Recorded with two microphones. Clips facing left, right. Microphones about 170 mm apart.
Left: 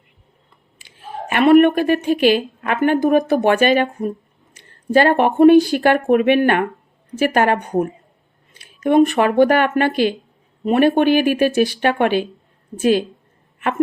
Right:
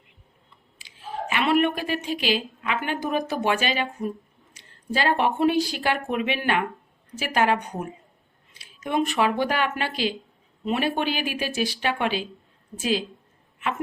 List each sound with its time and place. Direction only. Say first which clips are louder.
0.8 s a woman's voice: left 2 dB; 55° left (ahead or behind)